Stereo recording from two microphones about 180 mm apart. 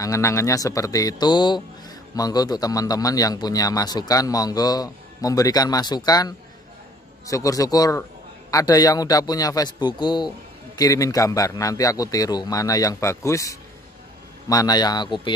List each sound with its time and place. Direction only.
0.0 s a man's voice: 15° left (ahead or behind)